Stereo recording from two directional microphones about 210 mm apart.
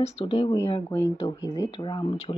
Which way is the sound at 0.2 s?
25° left (ahead or behind).